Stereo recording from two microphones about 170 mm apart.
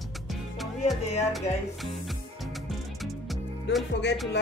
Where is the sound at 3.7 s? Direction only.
80° left.